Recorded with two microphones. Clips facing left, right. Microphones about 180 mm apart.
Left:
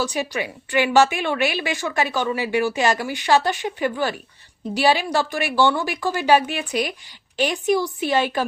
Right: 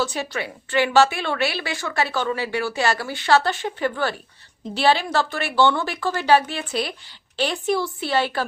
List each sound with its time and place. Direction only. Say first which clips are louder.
0.0 s a woman's voice: left 1 dB; 15° left (ahead or behind)